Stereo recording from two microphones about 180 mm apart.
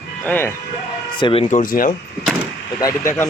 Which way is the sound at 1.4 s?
50° left (ahead or behind).